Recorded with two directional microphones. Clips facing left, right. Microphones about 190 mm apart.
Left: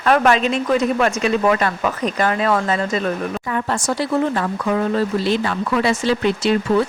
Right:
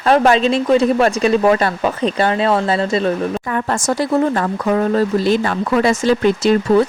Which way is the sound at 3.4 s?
50° right (ahead or behind).